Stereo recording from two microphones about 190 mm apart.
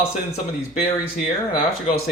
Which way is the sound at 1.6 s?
30° left (ahead or behind).